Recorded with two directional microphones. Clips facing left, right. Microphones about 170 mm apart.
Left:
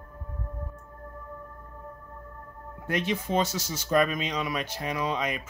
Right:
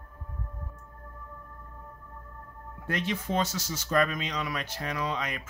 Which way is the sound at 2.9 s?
15° left (ahead or behind).